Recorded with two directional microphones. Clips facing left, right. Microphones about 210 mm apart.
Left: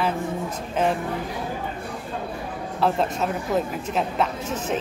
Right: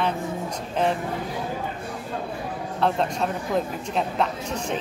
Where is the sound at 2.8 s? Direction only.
5° left (ahead or behind).